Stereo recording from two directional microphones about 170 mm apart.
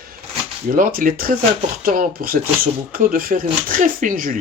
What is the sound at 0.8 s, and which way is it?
Speech, 55° right (ahead or behind).